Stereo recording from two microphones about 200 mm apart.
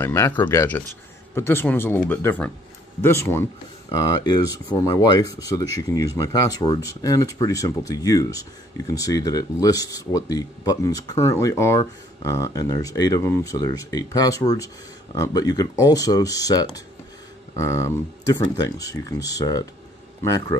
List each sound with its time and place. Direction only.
0.0 s speech: 10° left (ahead or behind)